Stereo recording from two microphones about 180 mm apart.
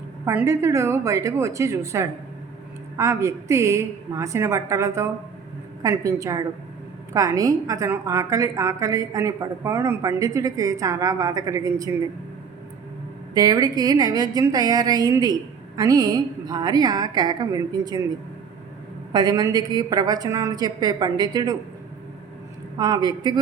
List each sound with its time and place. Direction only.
0.3 s a woman's voice: 15° right (ahead or behind)
13.3 s a woman's voice: 20° right (ahead or behind)
19.1 s a woman's voice: 20° right (ahead or behind)
22.8 s a woman's voice: 20° right (ahead or behind)